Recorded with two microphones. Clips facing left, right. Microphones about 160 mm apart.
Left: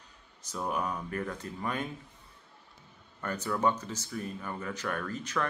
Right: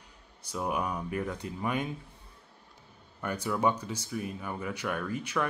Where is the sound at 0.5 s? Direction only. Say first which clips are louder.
Right 1 dB; 10° right (ahead or behind).